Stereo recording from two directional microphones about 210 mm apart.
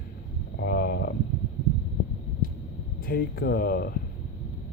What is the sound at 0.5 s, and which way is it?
Speech, 50° left (ahead or behind).